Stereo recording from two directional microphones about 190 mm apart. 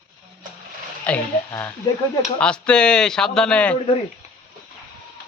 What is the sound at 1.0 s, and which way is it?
Speech, 10° left (ahead or behind).